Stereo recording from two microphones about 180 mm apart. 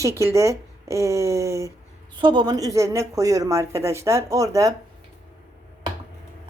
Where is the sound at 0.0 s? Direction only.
15° right (ahead or behind).